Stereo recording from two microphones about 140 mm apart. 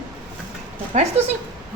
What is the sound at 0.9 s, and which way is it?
Speech, 50° right (ahead or behind).